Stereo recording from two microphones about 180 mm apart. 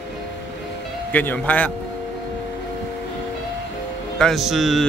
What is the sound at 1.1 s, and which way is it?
Speech, 10° left (ahead or behind).